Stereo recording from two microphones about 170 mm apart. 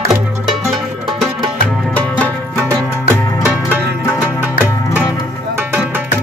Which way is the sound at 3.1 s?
15° left (ahead or behind).